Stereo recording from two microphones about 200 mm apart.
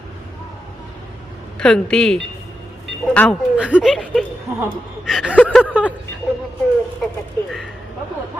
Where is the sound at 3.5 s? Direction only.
5° right (ahead or behind).